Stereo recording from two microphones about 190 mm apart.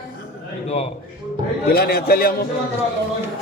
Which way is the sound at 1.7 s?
55° left (ahead or behind).